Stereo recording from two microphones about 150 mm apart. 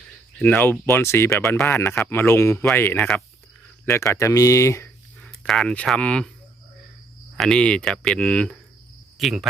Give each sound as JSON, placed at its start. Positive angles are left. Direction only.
{"t": 0.3, "sound": "speech", "side_deg": 10}
{"t": 5.4, "sound": "speech", "side_deg": 5}
{"t": 7.3, "sound": "speech", "side_deg": 5}